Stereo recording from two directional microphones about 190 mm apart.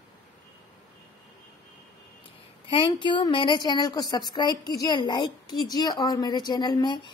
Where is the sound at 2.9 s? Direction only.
25° left (ahead or behind).